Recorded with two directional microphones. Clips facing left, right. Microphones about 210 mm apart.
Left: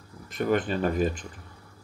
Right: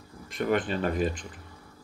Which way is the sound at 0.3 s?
45° left (ahead or behind).